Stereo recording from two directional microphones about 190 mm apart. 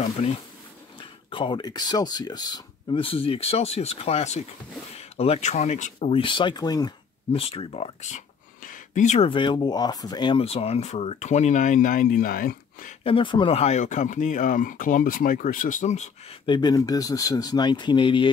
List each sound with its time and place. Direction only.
0.2 s speech: 35° left (ahead or behind)
13.0 s speech: 25° left (ahead or behind)
16.4 s speech: 20° left (ahead or behind)